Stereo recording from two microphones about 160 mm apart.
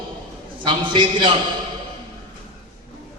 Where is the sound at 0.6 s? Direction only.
30° right (ahead or behind).